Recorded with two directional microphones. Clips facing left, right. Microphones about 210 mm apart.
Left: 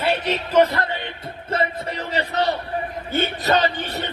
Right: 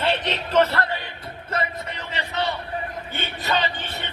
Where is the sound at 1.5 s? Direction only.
30° left (ahead or behind).